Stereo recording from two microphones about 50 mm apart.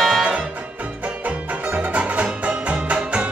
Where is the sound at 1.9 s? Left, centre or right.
Right.